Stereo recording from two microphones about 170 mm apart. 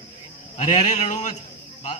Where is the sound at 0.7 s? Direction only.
45° left (ahead or behind).